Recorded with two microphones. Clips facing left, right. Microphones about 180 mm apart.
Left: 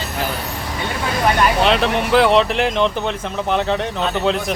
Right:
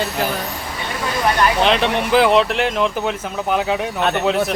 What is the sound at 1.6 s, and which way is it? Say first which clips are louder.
Speech: even; centre (ahead or behind).